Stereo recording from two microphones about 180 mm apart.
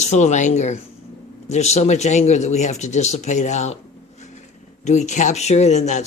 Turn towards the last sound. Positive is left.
turn(degrees=40)  # may be behind; listen again after turning